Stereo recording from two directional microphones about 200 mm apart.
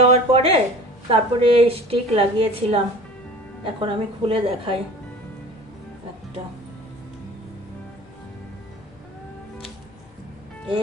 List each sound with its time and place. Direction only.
0.0 s a woman's voice: 30° right (ahead or behind)